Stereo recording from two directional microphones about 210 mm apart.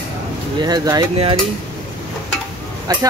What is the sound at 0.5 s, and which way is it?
Speech, 20° right (ahead or behind).